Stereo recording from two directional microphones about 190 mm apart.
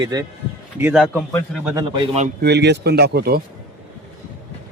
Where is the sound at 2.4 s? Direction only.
60° right (ahead or behind).